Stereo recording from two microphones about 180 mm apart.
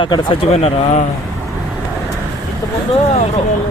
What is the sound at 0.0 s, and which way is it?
Speech, 30° left (ahead or behind).